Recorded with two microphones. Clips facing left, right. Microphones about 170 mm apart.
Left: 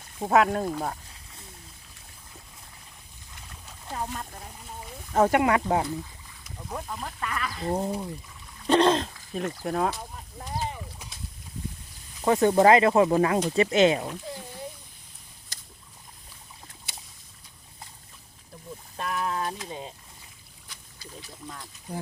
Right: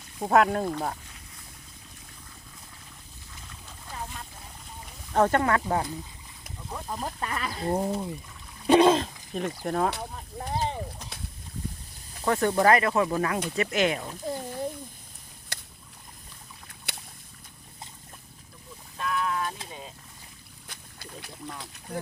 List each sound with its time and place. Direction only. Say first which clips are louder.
0.2 s speech: even; centre (ahead or behind)
3.9 s a sound: left 6 dB; 45° left (ahead or behind)
5.1 s speech: left 1 dB; 10° left (ahead or behind)
6.9 s speech: right 5 dB; 35° right (ahead or behind)
7.6 s speech: right 1 dB; 5° right (ahead or behind)
8.6 s throat clearing: right 2 dB; 10° right (ahead or behind)
9.3 s speech: even; centre (ahead or behind)
12.2 s speech: left 4 dB; 20° left (ahead or behind)
15.5 s a sound: right 9 dB; 65° right (ahead or behind)
16.9 s boat: right 5 dB; 65° right (ahead or behind)
18.9 s a sound: even; 40° left (ahead or behind)
20.7 s boat: right 1 dB; 60° right (ahead or behind)